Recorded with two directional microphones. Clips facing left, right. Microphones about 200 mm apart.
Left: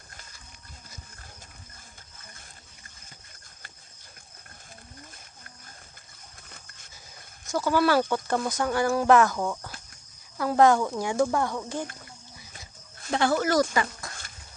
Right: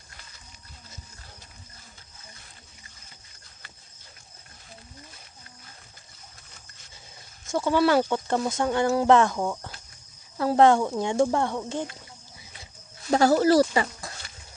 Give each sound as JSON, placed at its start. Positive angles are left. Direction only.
{"t": 7.4, "sound": "speech", "side_deg": -25}
{"t": 13.1, "sound": "speech", "side_deg": -40}